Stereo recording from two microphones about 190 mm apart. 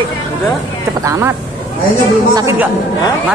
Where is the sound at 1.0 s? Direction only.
15° right (ahead or behind).